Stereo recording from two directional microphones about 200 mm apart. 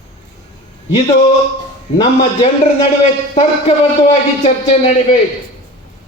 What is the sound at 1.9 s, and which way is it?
Speech, 30° left (ahead or behind).